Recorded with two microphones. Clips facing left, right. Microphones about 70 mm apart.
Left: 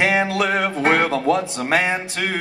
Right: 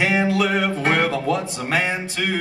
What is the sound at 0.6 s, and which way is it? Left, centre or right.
Music, centre.